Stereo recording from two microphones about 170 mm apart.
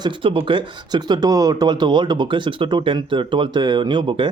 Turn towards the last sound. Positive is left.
turn(degrees=-25)  # may be behind; listen again after turning